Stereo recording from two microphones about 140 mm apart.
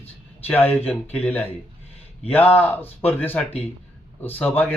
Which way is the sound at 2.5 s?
15° left (ahead or behind).